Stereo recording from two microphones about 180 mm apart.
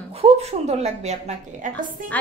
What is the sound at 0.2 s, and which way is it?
A woman's voice, 35° right (ahead or behind).